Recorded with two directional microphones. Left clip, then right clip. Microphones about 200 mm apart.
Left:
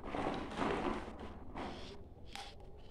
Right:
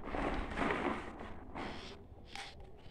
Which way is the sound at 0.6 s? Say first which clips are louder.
Right 2 dB; 35° right (ahead or behind).